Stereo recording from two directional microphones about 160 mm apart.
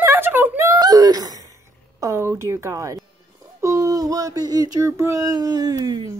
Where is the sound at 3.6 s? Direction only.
20° right (ahead or behind).